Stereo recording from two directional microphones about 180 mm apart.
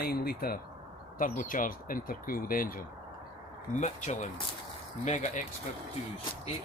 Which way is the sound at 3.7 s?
40° left (ahead or behind).